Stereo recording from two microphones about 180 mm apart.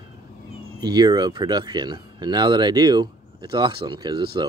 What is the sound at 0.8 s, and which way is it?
Speech, 25° right (ahead or behind).